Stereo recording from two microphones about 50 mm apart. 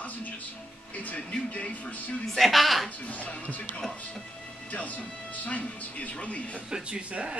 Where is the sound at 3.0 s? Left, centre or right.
Left.